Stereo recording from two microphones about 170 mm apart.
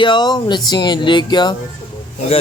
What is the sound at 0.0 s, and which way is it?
A man's voice, 25° left (ahead or behind).